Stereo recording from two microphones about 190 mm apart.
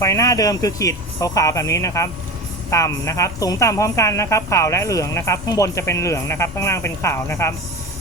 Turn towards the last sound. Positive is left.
turn(degrees=15)  # may be behind; listen again after turning